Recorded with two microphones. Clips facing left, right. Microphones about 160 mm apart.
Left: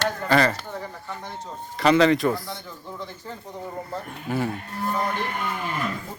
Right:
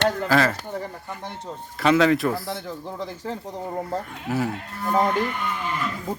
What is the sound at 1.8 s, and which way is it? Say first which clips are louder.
Speech: left 1 dB; centre (ahead or behind).